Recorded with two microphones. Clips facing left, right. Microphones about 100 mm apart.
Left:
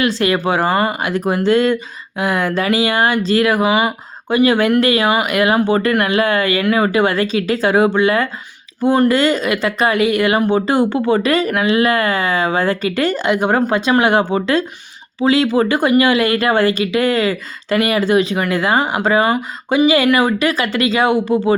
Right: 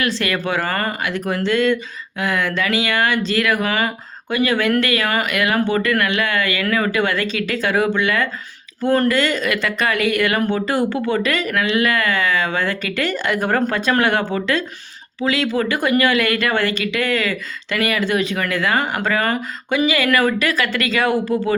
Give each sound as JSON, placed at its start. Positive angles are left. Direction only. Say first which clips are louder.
{"t": 0.0, "sound": "speech", "louder": "left 5 dB", "side_deg": 30}
{"t": 0.6, "sound": "speech", "louder": "left 6 dB", "side_deg": 15}
{"t": 1.0, "sound": "speech", "louder": "left 5 dB", "side_deg": 40}
{"t": 3.6, "sound": "speech", "louder": "left 5 dB", "side_deg": 10}
{"t": 4.3, "sound": "speech", "louder": "left 5 dB", "side_deg": 25}
{"t": 13.3, "sound": "speech", "louder": "left 3 dB", "side_deg": 25}
{"t": 20.1, "sound": "speech", "louder": "left 3 dB", "side_deg": 20}
{"t": 20.4, "sound": "speech", "louder": "left 4 dB", "side_deg": 30}